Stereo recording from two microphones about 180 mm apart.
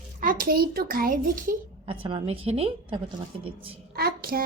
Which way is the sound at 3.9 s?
60° right (ahead or behind).